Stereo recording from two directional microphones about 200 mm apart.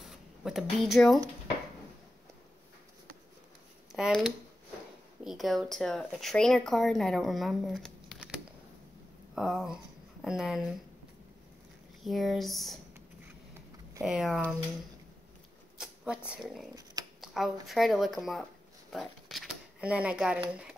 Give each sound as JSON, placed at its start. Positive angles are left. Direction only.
{"t": 0.0, "sound": "speech", "side_deg": 0}
{"t": 3.9, "sound": "speech", "side_deg": 0}
{"t": 12.0, "sound": "speech", "side_deg": 0}
{"t": 14.0, "sound": "speech", "side_deg": -5}
{"t": 15.8, "sound": "a sound", "side_deg": -5}
{"t": 16.3, "sound": "speech", "side_deg": 0}